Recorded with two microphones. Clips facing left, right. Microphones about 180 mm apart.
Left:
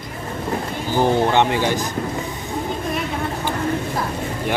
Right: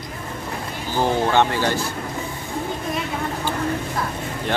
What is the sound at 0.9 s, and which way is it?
Speech, 15° left (ahead or behind).